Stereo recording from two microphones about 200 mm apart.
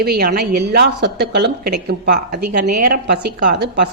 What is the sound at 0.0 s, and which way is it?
A woman's voice, 50° right (ahead or behind).